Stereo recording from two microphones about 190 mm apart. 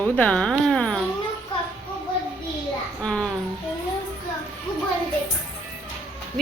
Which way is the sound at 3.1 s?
5° left (ahead or behind).